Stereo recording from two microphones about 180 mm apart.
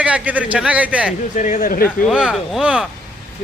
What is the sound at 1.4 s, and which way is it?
Speech, 45° left (ahead or behind).